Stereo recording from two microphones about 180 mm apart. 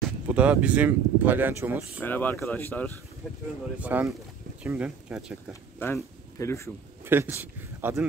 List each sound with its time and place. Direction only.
0.3 s speech: 10° right (ahead or behind)
2.0 s speech: 10° left (ahead or behind)
3.7 s speech: 10° right (ahead or behind)
5.5 s speech: 10° left (ahead or behind)
7.1 s speech: 10° right (ahead or behind)